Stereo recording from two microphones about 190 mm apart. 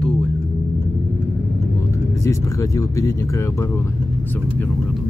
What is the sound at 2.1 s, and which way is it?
Speech, 15° left (ahead or behind).